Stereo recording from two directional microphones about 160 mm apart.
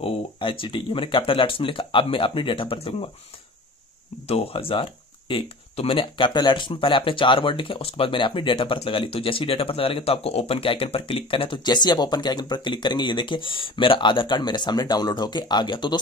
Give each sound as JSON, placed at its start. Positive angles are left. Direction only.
{"t": 0.0, "sound": "speech", "side_deg": 35}
{"t": 4.3, "sound": "speech", "side_deg": 35}